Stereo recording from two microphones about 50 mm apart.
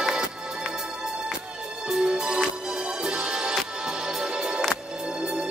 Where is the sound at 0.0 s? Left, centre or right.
Centre.